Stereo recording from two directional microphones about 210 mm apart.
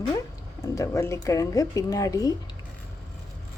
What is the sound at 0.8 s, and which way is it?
Speech, 15° left (ahead or behind).